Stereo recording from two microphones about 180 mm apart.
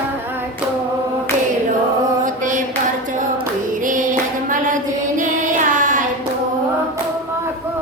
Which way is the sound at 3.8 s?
45° right (ahead or behind).